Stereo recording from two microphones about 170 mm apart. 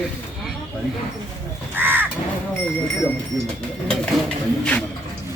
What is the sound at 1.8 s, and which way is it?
Crow, 10° right (ahead or behind).